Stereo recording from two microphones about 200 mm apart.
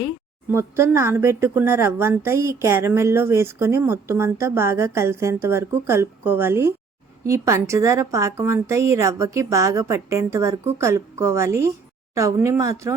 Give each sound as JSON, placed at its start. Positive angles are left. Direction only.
{"t": 0.5, "sound": "a woman's voice", "side_deg": -15}